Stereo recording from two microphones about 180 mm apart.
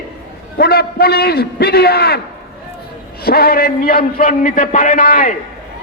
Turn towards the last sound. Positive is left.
turn(degrees=50)  # may be behind; listen again after turning